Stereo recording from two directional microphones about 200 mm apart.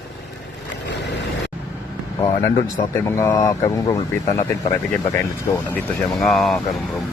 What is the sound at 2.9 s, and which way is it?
Speech, 15° left (ahead or behind).